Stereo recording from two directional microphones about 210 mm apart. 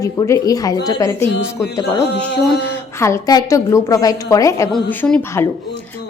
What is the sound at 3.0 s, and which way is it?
A woman's voice, 15° left (ahead or behind).